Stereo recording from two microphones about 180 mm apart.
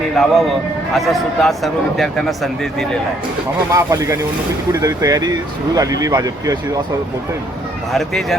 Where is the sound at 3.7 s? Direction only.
15° right (ahead or behind).